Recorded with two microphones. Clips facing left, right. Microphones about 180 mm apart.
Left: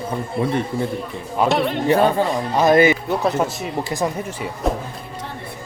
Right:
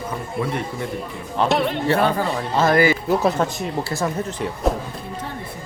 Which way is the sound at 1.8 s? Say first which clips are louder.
Left 6 dB; 15° left (ahead or behind).